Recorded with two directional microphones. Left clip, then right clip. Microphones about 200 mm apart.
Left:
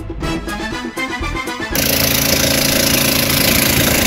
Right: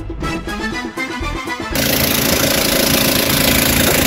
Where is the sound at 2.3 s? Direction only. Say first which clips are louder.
Even; 55° right (ahead or behind).